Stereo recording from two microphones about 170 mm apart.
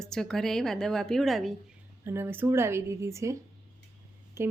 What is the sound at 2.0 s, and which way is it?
Speech, 15° right (ahead or behind).